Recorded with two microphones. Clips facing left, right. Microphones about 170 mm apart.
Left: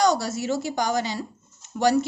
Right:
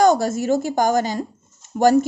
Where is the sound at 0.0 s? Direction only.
50° right (ahead or behind).